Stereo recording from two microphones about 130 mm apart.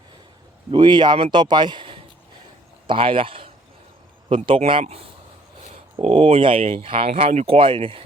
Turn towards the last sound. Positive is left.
turn(degrees=-45)  # may be behind; listen again after turning